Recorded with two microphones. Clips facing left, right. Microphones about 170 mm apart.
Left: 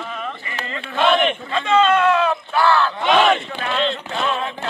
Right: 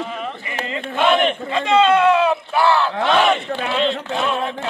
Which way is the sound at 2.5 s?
25° right (ahead or behind).